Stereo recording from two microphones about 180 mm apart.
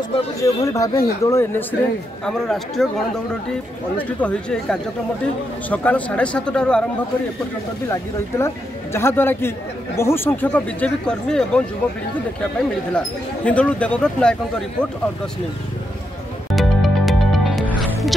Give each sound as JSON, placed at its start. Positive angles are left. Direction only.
{"t": 0.4, "sound": "speech", "side_deg": 15}
{"t": 4.2, "sound": "speech", "side_deg": 5}
{"t": 7.9, "sound": "speech", "side_deg": 15}
{"t": 12.9, "sound": "speech", "side_deg": 5}
{"t": 16.5, "sound": "music", "side_deg": 0}